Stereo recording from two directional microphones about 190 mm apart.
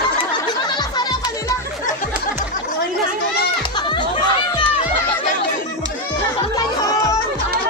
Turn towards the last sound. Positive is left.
turn(degrees=20)  # may be behind; listen again after turning